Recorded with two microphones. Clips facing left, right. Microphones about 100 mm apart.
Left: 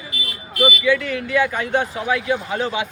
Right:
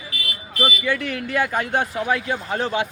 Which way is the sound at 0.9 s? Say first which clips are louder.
Left 5 dB; 50° right (ahead or behind).